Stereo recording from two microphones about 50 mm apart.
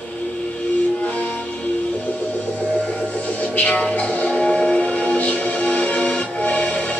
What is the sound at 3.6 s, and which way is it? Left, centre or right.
Music, left.